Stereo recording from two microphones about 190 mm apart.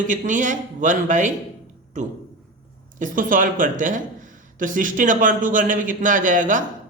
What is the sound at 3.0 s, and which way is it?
Speech, 45° right (ahead or behind).